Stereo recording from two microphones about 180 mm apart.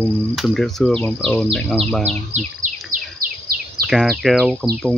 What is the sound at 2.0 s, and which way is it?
Speech, 40° right (ahead or behind).